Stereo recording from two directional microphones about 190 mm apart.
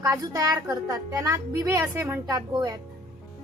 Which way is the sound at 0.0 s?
15° right (ahead or behind).